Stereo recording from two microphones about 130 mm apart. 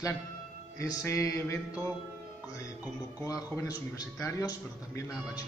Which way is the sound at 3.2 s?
25° left (ahead or behind).